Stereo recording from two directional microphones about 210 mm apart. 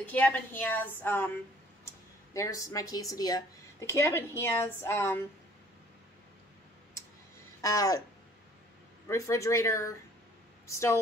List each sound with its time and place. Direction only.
0.0 s speech: 10° left (ahead or behind)
2.3 s speech: 15° left (ahead or behind)
7.6 s speech: 15° left (ahead or behind)
9.0 s speech: 15° left (ahead or behind)